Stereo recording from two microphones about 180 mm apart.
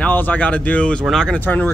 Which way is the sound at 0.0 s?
10° left (ahead or behind).